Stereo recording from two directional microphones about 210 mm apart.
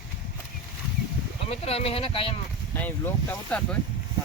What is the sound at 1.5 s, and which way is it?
Speech, 30° left (ahead or behind).